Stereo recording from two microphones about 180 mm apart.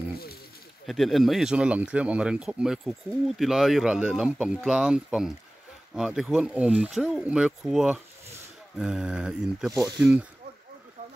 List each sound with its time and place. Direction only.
0.8 s speech: centre (ahead or behind)
9.7 s speech: 20° right (ahead or behind)
11.0 s a sound: 35° right (ahead or behind)